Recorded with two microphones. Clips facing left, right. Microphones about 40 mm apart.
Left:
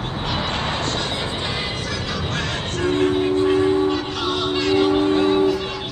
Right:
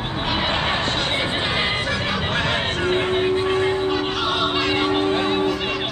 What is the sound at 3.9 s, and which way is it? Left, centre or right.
Music, centre.